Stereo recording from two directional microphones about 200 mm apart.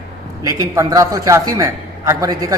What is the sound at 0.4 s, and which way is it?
Speech, 15° right (ahead or behind).